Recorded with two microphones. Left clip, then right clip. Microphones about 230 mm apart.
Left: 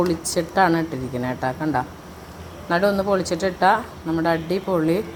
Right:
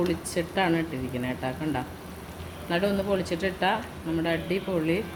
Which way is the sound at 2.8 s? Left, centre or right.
Left.